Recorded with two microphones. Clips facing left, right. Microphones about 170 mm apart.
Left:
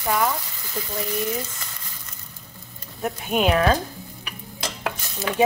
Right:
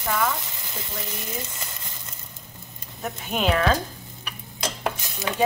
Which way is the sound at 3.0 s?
5° left (ahead or behind).